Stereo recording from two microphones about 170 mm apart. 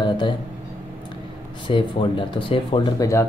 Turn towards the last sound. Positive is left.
turn(degrees=20)  # may be behind; listen again after turning